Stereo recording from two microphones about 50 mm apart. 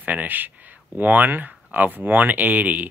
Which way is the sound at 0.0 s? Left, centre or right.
Right.